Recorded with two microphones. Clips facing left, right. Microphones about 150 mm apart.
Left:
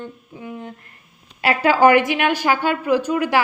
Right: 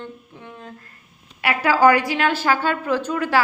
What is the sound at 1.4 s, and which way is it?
A woman's voice, 25° left (ahead or behind).